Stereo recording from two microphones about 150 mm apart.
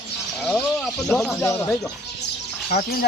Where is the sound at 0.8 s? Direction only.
Centre (ahead or behind).